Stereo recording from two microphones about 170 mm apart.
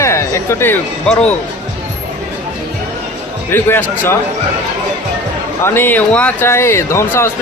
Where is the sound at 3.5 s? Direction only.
10° left (ahead or behind).